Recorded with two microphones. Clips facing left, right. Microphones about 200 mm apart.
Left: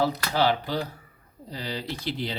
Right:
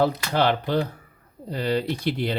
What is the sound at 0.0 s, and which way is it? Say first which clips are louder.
Speech: right 3 dB; 60° right (ahead or behind).